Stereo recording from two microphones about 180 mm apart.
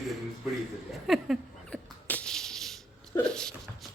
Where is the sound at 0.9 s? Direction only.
Centre (ahead or behind).